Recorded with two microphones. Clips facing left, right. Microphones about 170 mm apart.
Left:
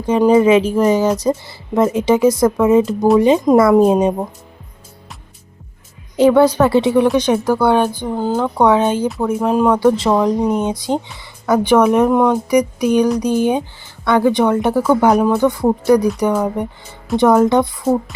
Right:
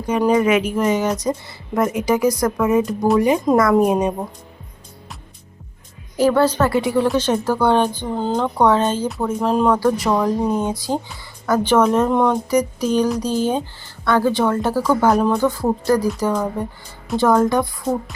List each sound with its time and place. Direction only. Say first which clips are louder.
0.0 s speech: left 5 dB; 25° left (ahead or behind)
6.1 s speech: left 5 dB; 20° left (ahead or behind)
6.7 s speech: left 5 dB; 25° left (ahead or behind); by 9.8 s 10° left (ahead or behind)
9.8 s speech: left 4 dB; 25° left (ahead or behind)